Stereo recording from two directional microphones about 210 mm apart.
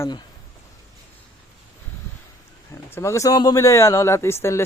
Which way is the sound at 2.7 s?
15° left (ahead or behind).